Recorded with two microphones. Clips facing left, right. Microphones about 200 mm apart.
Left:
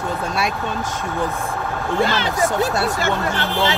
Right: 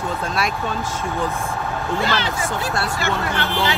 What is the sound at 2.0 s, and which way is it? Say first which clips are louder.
Speech: left 7 dB; 50° left (ahead or behind).